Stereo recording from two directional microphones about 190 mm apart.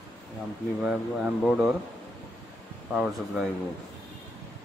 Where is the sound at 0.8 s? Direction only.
5° right (ahead or behind).